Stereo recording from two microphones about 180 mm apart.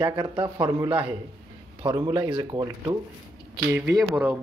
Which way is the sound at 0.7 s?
10° right (ahead or behind).